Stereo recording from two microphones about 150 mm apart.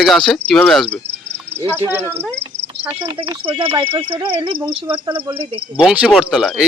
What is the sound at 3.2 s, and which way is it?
Speech, 35° right (ahead or behind).